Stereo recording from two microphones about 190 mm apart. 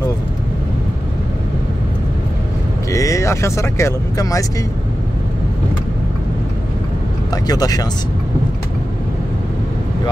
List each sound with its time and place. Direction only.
2.9 s speech: 15° left (ahead or behind)
7.4 s speech: 20° left (ahead or behind)